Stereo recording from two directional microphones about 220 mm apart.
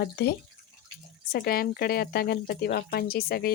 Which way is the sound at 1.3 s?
45° left (ahead or behind).